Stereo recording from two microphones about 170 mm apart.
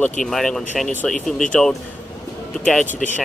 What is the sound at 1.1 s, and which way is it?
Speech, 50° left (ahead or behind).